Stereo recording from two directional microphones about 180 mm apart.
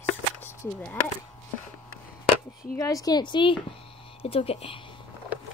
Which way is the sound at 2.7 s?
20° left (ahead or behind).